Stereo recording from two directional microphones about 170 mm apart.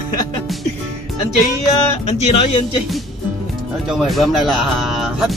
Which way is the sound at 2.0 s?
40° left (ahead or behind).